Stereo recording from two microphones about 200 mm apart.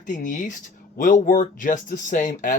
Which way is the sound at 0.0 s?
40° left (ahead or behind).